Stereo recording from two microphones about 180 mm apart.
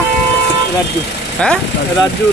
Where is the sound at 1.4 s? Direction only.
5° left (ahead or behind).